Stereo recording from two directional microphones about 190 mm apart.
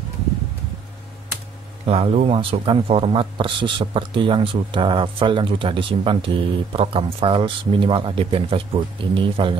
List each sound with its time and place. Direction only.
1.9 s speech: 30° right (ahead or behind)